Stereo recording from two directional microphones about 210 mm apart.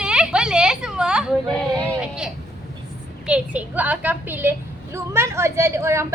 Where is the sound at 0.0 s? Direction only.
5° right (ahead or behind).